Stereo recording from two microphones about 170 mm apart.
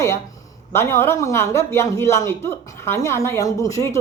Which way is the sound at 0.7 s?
15° left (ahead or behind).